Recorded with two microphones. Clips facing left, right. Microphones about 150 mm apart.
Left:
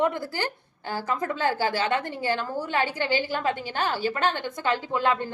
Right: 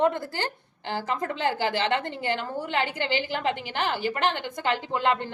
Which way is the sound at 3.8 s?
20° right (ahead or behind).